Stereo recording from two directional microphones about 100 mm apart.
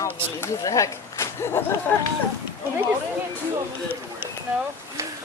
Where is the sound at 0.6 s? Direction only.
35° left (ahead or behind).